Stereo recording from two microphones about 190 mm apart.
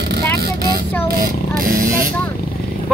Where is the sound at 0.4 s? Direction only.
55° right (ahead or behind).